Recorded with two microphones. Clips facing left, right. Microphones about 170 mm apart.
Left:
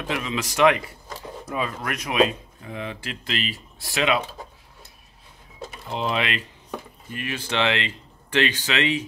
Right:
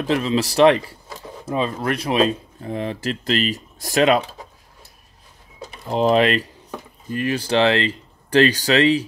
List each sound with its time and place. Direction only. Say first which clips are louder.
0.0 s speech: right 8 dB; 35° right (ahead or behind)
5.9 s speech: right 10 dB; 40° right (ahead or behind)